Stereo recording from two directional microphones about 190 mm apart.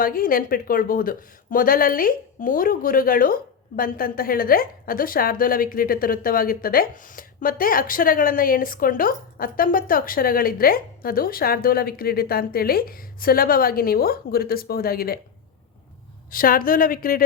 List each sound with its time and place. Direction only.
0.0 s speech: 50° left (ahead or behind)
16.3 s speech: 50° left (ahead or behind)